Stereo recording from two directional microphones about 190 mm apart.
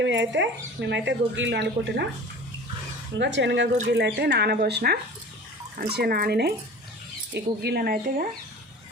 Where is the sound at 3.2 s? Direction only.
70° right (ahead or behind).